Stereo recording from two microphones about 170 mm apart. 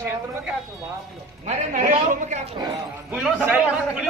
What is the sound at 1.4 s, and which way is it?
Speech, 45° right (ahead or behind).